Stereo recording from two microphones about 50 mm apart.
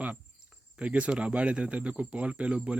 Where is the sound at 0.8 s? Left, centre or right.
Right.